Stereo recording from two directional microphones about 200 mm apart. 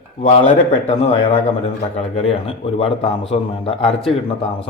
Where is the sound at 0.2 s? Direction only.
35° left (ahead or behind).